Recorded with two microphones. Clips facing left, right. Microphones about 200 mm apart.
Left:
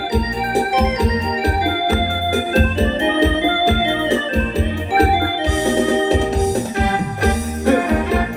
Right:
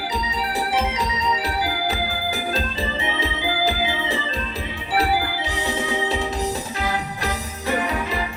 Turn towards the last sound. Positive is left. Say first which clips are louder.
# left 10 dB
turn(degrees=65)  # may be behind; listen again after turning